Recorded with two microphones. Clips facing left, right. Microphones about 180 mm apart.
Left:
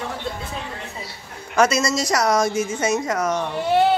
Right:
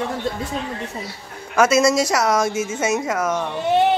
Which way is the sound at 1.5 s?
5° right (ahead or behind).